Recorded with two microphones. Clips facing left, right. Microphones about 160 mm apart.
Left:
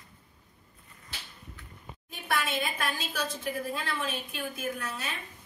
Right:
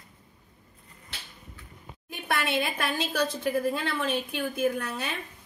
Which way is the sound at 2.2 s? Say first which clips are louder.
Right 3 dB; 60° right (ahead or behind).